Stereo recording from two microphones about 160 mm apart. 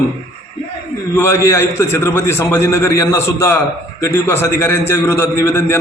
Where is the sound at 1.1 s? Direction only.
15° left (ahead or behind).